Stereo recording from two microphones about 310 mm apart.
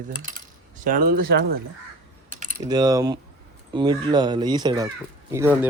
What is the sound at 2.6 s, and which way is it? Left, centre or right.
Speech, centre.